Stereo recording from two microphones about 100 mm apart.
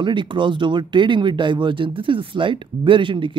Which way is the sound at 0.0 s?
55° right (ahead or behind).